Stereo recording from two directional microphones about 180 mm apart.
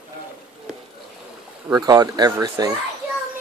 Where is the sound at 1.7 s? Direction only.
20° right (ahead or behind).